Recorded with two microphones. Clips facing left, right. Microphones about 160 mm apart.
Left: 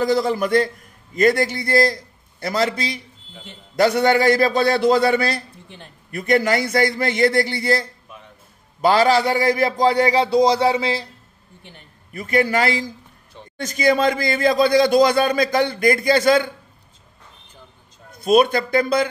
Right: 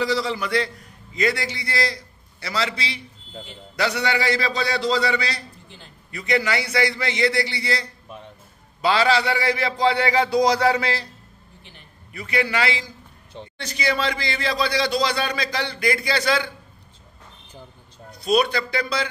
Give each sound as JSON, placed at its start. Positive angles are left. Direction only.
{"t": 0.0, "sound": "a man's voice", "side_deg": 50}
{"t": 12.1, "sound": "a man's voice", "side_deg": 45}
{"t": 18.1, "sound": "a man's voice", "side_deg": 50}